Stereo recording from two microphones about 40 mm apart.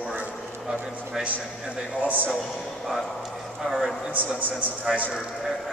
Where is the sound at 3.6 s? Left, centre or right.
Centre.